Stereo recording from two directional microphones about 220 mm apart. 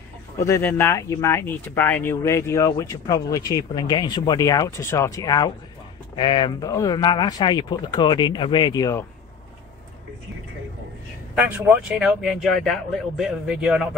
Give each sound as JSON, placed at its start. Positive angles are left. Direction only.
{"t": 0.4, "sound": "speech", "side_deg": 10}
{"t": 11.3, "sound": "speech", "side_deg": -10}